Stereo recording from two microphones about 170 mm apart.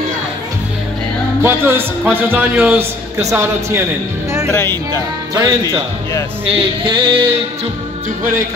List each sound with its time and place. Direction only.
1.4 s speech: 15° right (ahead or behind)
4.5 s speech: 15° left (ahead or behind)
5.3 s speech: 20° right (ahead or behind)
6.4 s music: 30° right (ahead or behind)